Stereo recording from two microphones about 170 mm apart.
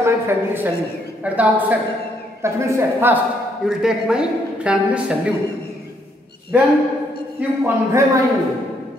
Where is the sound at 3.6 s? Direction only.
5° right (ahead or behind).